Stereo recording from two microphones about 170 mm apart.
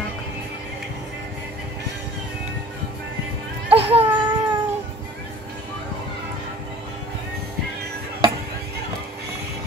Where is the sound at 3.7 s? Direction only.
35° right (ahead or behind).